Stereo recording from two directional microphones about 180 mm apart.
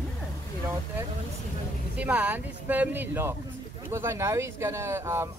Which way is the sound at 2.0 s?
5° right (ahead or behind).